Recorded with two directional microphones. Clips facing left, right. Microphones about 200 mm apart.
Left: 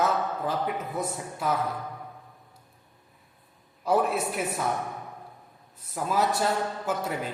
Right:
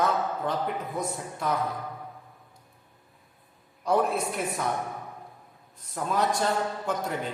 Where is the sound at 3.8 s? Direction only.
5° left (ahead or behind).